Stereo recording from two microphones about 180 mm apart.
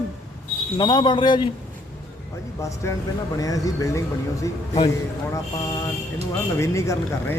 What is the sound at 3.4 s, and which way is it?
Speech, 20° left (ahead or behind).